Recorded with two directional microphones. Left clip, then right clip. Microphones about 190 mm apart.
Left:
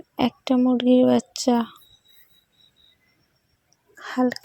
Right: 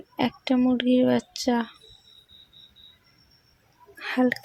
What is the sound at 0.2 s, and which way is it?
Speech, 35° left (ahead or behind).